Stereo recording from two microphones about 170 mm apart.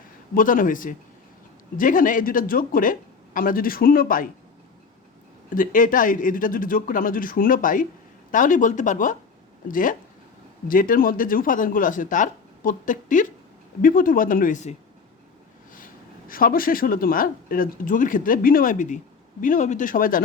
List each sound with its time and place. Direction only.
0.3 s speech: 50° left (ahead or behind)
5.5 s speech: 50° left (ahead or behind)
16.3 s speech: 60° left (ahead or behind)